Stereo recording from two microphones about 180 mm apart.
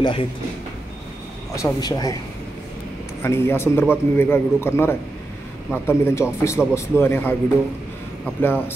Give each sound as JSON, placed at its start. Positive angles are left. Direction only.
{"t": 0.0, "sound": "speech", "side_deg": 30}
{"t": 1.5, "sound": "speech", "side_deg": 20}
{"t": 3.2, "sound": "a man's voice", "side_deg": 15}
{"t": 8.4, "sound": "a man's voice", "side_deg": 10}